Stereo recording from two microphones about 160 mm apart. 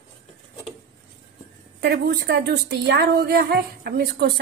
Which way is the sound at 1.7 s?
90° right.